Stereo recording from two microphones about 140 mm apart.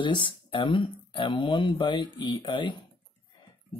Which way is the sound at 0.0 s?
35° left (ahead or behind).